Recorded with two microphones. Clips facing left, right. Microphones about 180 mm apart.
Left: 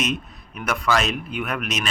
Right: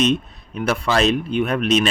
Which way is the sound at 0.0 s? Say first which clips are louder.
Right 7 dB; 30° right (ahead or behind).